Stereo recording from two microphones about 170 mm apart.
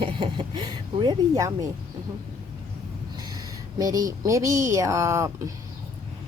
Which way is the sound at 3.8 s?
20° right (ahead or behind).